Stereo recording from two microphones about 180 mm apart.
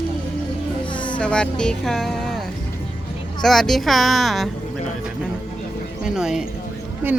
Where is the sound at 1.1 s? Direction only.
5° left (ahead or behind).